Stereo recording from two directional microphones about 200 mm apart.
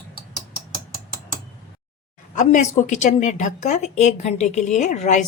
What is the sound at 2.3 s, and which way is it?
A woman's voice, 35° left (ahead or behind).